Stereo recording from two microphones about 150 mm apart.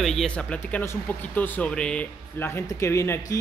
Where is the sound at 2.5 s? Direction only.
20° left (ahead or behind).